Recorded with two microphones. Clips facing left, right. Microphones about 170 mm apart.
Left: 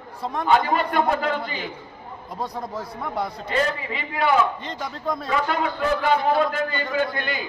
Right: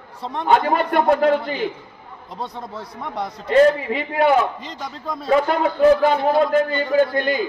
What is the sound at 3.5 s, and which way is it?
Speech, 50° right (ahead or behind).